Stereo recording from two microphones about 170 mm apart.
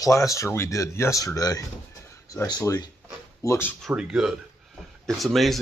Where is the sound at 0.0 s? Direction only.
20° left (ahead or behind).